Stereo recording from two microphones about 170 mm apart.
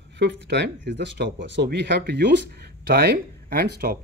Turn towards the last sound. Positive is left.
turn(degrees=-65)  # may be behind; listen again after turning